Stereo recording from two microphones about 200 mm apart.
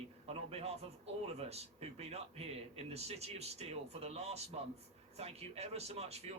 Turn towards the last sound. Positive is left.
turn(degrees=-30)  # may be behind; listen again after turning